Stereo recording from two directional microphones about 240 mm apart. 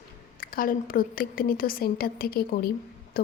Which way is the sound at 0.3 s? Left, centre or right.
Left.